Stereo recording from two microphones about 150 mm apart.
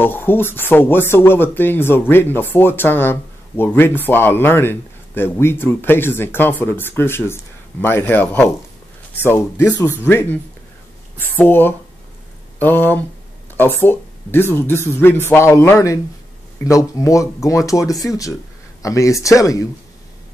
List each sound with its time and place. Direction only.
0.0 s speech: 15° left (ahead or behind)